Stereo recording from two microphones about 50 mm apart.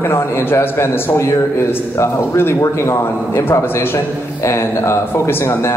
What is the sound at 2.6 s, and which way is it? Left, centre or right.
A man's voice, left.